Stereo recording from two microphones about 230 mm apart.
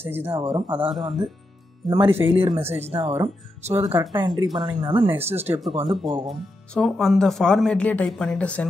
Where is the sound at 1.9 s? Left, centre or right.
Centre.